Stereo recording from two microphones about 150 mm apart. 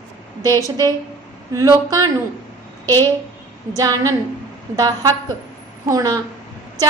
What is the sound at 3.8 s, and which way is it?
A woman's voice, 25° right (ahead or behind).